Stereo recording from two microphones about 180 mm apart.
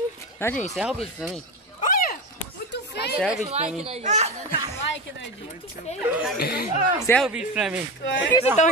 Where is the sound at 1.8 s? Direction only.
50° left (ahead or behind).